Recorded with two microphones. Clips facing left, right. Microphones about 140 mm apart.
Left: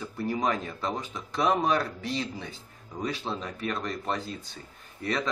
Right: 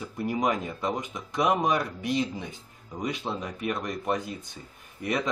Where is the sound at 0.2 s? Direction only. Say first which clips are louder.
Right 1 dB; 15° right (ahead or behind).